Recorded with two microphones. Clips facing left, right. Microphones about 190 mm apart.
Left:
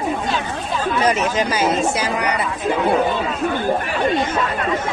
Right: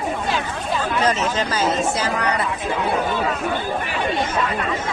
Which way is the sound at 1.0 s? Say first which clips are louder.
Left 3 dB; 15° left (ahead or behind).